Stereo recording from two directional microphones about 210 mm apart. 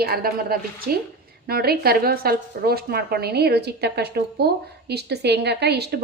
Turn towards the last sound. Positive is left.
turn(degrees=-50)  # may be behind; listen again after turning